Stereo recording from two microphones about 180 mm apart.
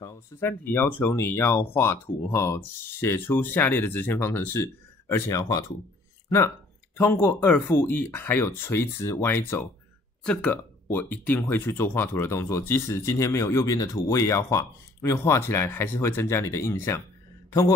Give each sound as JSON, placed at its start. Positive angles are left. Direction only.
{"t": 0.0, "sound": "speech", "side_deg": 10}
{"t": 7.0, "sound": "speech", "side_deg": 10}